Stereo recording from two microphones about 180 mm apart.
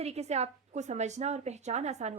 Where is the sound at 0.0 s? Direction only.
35° right (ahead or behind).